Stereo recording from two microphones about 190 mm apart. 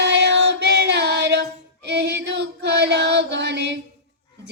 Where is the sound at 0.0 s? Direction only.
65° right (ahead or behind).